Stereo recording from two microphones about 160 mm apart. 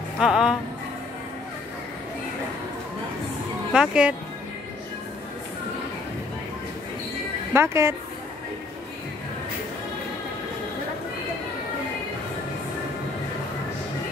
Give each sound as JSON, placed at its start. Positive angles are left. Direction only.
{"t": 0.2, "sound": "speech", "side_deg": -5}
{"t": 3.7, "sound": "speech", "side_deg": -5}
{"t": 7.5, "sound": "speech", "side_deg": -15}